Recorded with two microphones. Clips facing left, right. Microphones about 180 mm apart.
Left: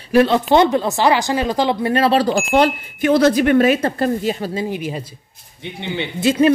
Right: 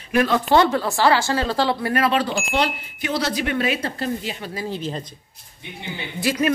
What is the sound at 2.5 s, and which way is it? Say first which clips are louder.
Speech: left 8 dB; 50° left (ahead or behind).